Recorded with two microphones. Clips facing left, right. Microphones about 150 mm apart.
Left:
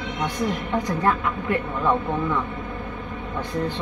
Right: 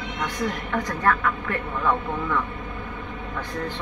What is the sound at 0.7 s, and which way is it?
A woman's voice, 20° left (ahead or behind).